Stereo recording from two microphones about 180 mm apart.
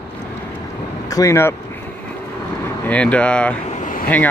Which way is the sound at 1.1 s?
15° left (ahead or behind).